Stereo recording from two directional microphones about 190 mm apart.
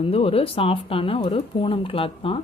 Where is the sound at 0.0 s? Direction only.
30° left (ahead or behind).